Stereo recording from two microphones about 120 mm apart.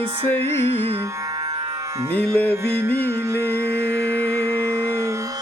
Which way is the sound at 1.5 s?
60° right (ahead or behind).